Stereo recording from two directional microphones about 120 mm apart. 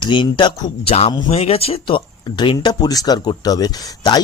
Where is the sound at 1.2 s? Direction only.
60° left (ahead or behind).